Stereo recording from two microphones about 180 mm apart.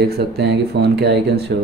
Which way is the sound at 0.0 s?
60° right (ahead or behind).